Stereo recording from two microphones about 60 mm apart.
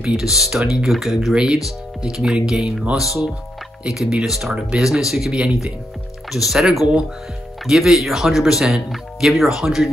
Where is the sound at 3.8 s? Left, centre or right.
Centre.